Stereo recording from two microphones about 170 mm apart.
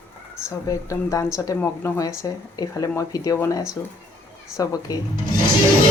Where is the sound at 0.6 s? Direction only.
20° left (ahead or behind).